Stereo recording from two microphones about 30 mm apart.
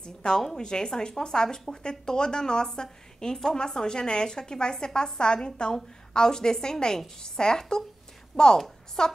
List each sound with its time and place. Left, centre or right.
0.0 s speech: left